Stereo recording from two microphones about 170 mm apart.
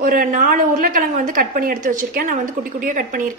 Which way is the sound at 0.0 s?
55° right (ahead or behind).